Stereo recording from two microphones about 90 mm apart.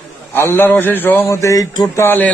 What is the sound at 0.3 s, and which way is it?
A man's voice, 30° left (ahead or behind).